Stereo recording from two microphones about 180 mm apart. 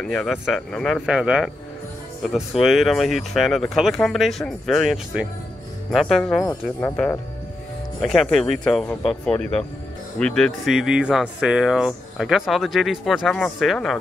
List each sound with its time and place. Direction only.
0.0 s speech: 5° left (ahead or behind)
6.8 s speech: 15° left (ahead or behind)